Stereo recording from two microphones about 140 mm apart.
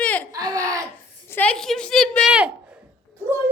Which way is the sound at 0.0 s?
10° left (ahead or behind).